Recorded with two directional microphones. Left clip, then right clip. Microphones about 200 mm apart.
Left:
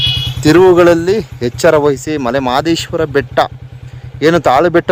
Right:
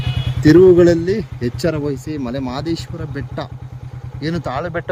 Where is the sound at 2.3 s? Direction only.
30° left (ahead or behind).